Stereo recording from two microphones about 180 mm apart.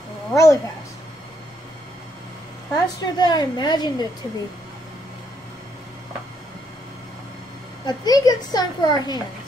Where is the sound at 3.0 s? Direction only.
25° left (ahead or behind).